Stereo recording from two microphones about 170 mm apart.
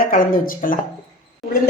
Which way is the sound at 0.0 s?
55° left (ahead or behind).